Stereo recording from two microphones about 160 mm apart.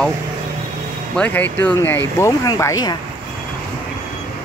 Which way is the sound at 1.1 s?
10° left (ahead or behind).